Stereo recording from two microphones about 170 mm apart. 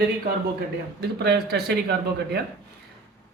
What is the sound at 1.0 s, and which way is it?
Speech, 75° right (ahead or behind).